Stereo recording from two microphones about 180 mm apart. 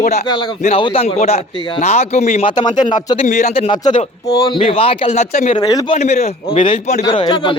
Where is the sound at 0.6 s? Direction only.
30° left (ahead or behind).